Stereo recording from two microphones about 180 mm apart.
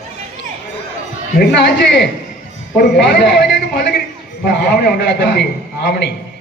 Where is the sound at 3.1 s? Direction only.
65° left (ahead or behind).